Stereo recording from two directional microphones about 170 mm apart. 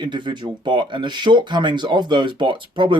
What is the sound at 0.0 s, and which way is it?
Speech, 25° right (ahead or behind).